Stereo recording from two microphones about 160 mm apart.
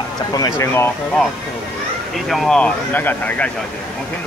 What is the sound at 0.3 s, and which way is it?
Speech, 20° left (ahead or behind).